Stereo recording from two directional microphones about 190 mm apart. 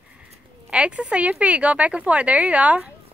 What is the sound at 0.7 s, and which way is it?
Speech, 5° right (ahead or behind).